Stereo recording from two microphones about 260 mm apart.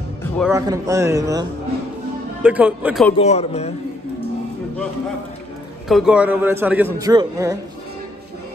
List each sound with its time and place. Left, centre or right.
0.5 s a man's voice: centre
3.2 s a man's voice: left
5.9 s a man's voice: centre